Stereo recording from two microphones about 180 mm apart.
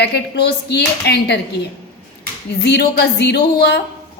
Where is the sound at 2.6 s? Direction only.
65° left (ahead or behind).